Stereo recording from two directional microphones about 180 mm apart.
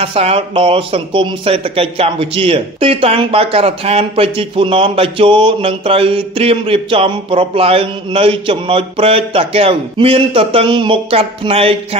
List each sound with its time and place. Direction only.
0.0 s speech: 35° right (ahead or behind)